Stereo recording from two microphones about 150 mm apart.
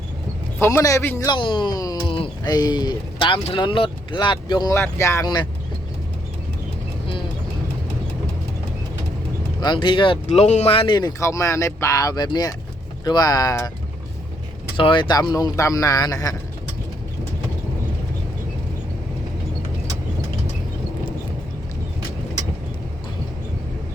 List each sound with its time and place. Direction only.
0.6 s speech: 20° left (ahead or behind)
1.4 s speech: 35° left (ahead or behind)
4.7 s speech: 20° left (ahead or behind)
9.6 s speech: 30° left (ahead or behind)
10.2 s speech: 50° left (ahead or behind); by 11.1 s 30° left (ahead or behind)
11.2 s speech: 20° left (ahead or behind)
14.8 s speech: 35° left (ahead or behind)